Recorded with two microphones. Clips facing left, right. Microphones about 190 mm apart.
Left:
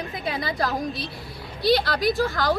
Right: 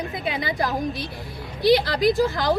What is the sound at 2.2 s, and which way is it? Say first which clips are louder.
Speech: right 2 dB; 20° right (ahead or behind).